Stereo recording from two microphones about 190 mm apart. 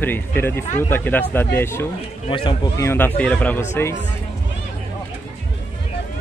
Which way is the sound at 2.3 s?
25° left (ahead or behind).